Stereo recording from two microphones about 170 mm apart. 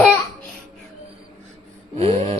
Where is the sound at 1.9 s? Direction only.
35° right (ahead or behind).